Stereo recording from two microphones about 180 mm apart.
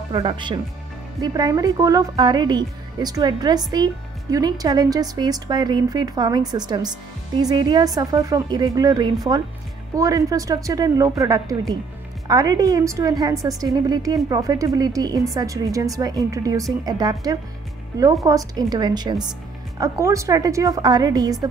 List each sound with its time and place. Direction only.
0.1 s a woman's voice: 30° right (ahead or behind)